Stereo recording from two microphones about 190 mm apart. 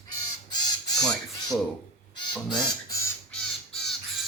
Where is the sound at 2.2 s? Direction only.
25° left (ahead or behind).